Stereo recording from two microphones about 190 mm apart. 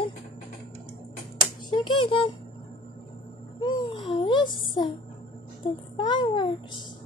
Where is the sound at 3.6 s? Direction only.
25° left (ahead or behind).